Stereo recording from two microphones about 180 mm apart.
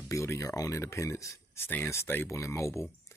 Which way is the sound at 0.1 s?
15° left (ahead or behind).